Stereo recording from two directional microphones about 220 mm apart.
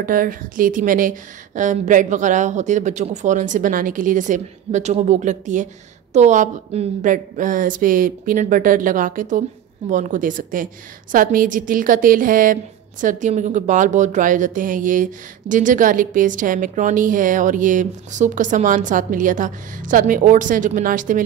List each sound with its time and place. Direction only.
0.0 s speech: 40° right (ahead or behind)